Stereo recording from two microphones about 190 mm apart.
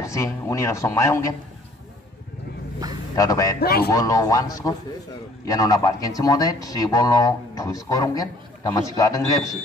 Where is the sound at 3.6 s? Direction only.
55° left (ahead or behind).